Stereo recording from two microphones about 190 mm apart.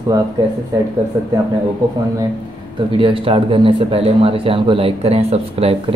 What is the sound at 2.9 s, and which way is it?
Speech, 25° right (ahead or behind).